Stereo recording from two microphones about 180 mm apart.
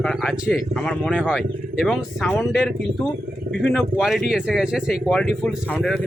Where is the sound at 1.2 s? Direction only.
5° right (ahead or behind).